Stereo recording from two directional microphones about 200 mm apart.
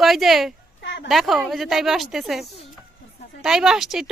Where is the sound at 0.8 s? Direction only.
65° left (ahead or behind).